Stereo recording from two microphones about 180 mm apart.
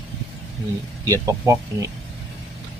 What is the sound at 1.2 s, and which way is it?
Speech, 15° right (ahead or behind).